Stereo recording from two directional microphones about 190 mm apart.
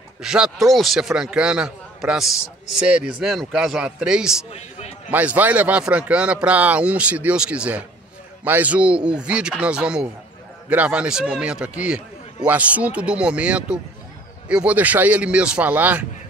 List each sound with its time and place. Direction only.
0.2 s a man's voice: 5° right (ahead or behind)
4.5 s a man's voice: 30° left (ahead or behind)
5.1 s a man's voice: 10° right (ahead or behind)